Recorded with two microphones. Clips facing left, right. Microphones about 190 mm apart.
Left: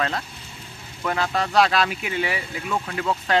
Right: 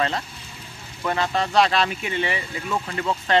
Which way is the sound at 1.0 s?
Centre (ahead or behind).